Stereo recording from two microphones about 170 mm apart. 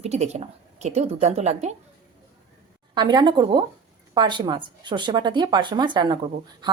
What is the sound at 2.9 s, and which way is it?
Speech, 25° right (ahead or behind).